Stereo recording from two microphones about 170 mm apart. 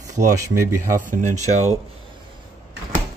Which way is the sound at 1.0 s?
50° right (ahead or behind).